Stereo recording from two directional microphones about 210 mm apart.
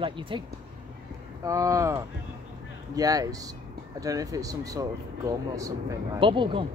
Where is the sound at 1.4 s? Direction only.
15° right (ahead or behind).